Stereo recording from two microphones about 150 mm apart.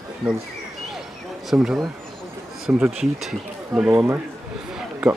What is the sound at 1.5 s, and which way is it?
Speech, 5° right (ahead or behind).